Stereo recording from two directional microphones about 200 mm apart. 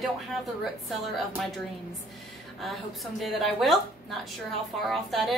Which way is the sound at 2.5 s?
Centre (ahead or behind).